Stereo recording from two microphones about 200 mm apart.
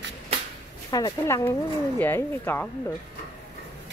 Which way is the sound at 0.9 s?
20° left (ahead or behind).